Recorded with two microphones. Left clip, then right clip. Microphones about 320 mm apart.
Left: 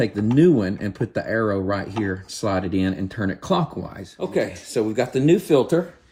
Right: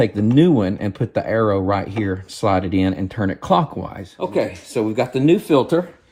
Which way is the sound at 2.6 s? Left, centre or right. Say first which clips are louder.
Right 4 dB; right.